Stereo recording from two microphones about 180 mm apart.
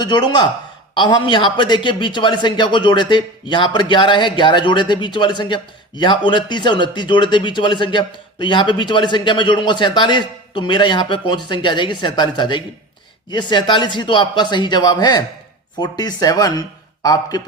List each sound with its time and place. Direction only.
0.0 s speech: 25° left (ahead or behind)